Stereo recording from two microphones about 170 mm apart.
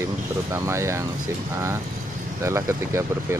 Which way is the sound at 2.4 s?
15° right (ahead or behind).